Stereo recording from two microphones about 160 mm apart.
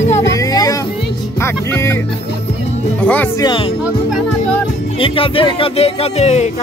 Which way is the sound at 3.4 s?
30° left (ahead or behind).